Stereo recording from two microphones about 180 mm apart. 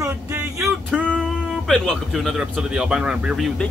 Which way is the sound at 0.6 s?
5° right (ahead or behind).